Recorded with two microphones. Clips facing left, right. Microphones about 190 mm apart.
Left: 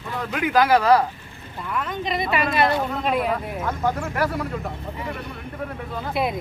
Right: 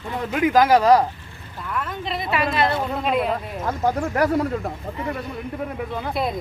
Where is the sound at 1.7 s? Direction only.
Centre (ahead or behind).